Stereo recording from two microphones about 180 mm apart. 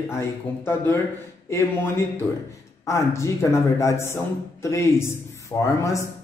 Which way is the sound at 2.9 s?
15° left (ahead or behind).